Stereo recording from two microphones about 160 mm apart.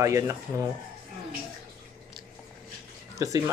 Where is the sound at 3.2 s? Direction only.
20° right (ahead or behind).